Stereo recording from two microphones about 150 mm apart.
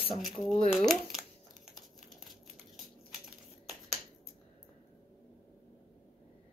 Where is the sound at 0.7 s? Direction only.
Centre (ahead or behind).